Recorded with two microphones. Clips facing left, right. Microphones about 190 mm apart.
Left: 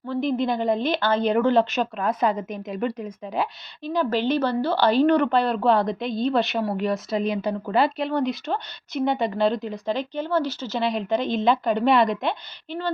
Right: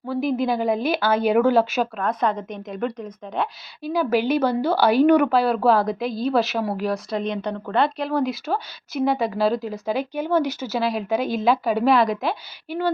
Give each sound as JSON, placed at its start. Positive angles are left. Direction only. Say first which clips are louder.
{"t": 0.1, "sound": "a woman's voice", "louder": "right 1 dB", "side_deg": -5}
{"t": 3.8, "sound": "a woman's voice", "louder": "right 2 dB", "side_deg": -10}